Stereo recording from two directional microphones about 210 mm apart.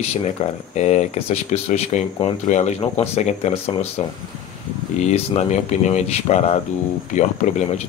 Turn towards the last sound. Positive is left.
turn(degrees=35)  # may be behind; listen again after turning